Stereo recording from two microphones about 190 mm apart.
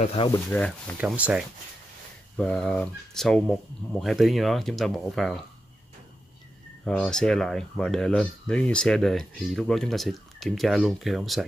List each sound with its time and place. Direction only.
0.0 s speech: 30° left (ahead or behind)
0.3 s speech: 5° left (ahead or behind)
0.9 s speech: 5° right (ahead or behind)
2.3 s speech: 5° left (ahead or behind)
6.8 s speech: 5° left (ahead or behind)